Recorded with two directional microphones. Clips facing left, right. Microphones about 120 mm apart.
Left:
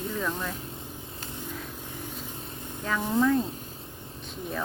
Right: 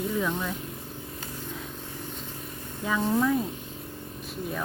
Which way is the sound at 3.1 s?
5° right (ahead or behind).